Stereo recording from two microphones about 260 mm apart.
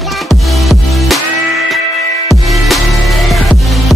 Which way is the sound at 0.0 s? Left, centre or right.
Centre.